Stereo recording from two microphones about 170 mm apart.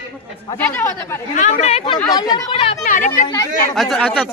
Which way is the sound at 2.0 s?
20° left (ahead or behind).